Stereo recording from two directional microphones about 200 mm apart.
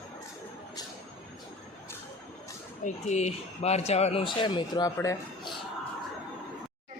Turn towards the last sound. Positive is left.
turn(degrees=15)  # may be behind; listen again after turning